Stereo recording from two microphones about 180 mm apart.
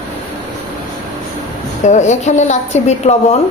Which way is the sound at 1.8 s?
40° left (ahead or behind).